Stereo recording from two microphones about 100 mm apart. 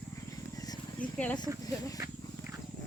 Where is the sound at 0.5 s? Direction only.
40° left (ahead or behind).